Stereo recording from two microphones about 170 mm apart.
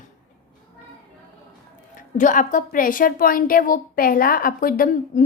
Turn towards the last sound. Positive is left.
turn(degrees=55)  # may be behind; listen again after turning